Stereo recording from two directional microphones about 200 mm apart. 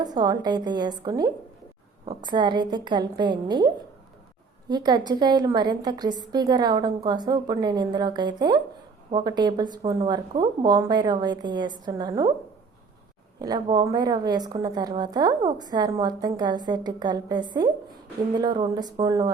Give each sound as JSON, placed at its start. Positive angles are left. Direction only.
{"t": 0.0, "sound": "a woman's voice", "side_deg": -20}
{"t": 13.4, "sound": "a woman's voice", "side_deg": -20}